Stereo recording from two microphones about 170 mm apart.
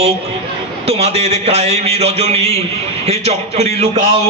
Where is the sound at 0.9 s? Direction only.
40° right (ahead or behind).